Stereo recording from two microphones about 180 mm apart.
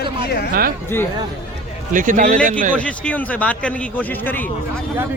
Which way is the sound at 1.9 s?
45° right (ahead or behind).